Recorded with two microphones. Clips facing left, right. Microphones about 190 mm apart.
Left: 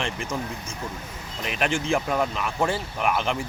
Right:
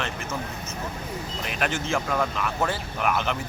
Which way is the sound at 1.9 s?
15° left (ahead or behind).